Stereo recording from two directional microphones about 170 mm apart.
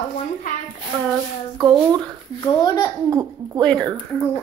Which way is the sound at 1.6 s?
25° right (ahead or behind).